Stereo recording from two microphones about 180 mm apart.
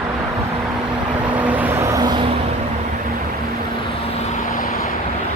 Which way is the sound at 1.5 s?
10° right (ahead or behind).